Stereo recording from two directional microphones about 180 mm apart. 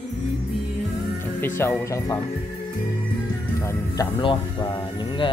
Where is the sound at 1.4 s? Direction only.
15° left (ahead or behind).